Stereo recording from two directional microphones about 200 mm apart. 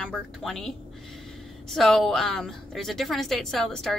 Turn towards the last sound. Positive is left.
turn(degrees=0)  # may be behind; listen again after turning